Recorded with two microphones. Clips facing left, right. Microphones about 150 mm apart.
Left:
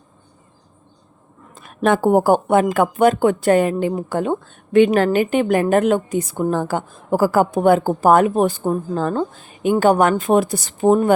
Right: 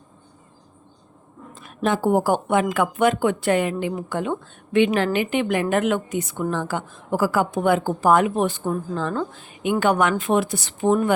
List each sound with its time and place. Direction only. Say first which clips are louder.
1.5 s speech: left 5 dB; 55° left (ahead or behind)